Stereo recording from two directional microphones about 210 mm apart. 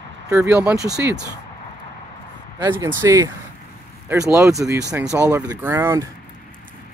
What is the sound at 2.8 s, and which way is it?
Speech, 15° right (ahead or behind).